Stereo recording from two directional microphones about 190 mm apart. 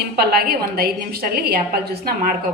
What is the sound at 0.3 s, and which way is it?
A woman's voice, 55° right (ahead or behind).